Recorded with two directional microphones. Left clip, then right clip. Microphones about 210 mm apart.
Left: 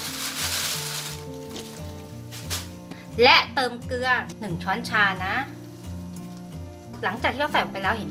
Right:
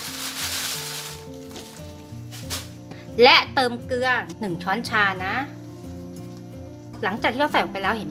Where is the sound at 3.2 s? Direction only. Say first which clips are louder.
Right 2 dB; 45° right (ahead or behind).